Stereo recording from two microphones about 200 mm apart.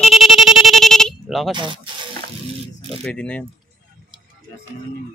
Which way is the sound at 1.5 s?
25° right (ahead or behind).